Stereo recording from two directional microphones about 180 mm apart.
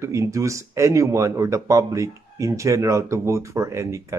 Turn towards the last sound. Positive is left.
turn(degrees=-15)  # may be behind; listen again after turning